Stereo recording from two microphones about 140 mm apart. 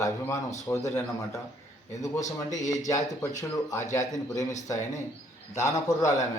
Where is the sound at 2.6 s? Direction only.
25° left (ahead or behind).